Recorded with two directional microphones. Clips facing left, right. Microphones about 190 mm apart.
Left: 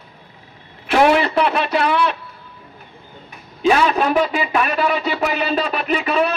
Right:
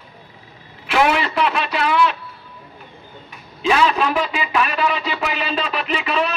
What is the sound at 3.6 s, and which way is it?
Speech, 40° left (ahead or behind).